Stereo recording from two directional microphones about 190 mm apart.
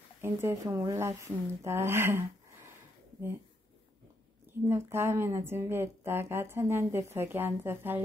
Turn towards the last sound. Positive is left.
turn(degrees=-10)  # may be behind; listen again after turning